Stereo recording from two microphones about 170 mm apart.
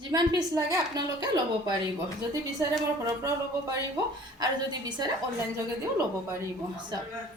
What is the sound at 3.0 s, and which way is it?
Speech, 20° right (ahead or behind).